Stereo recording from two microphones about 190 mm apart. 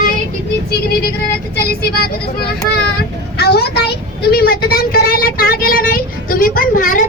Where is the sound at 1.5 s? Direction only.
55° left (ahead or behind).